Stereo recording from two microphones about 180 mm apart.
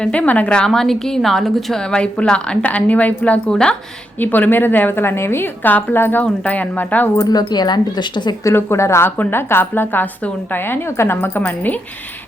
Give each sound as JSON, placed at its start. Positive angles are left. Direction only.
{"t": 0.0, "sound": "a woman's voice", "side_deg": 5}
{"t": 7.3, "sound": "a woman's voice", "side_deg": 20}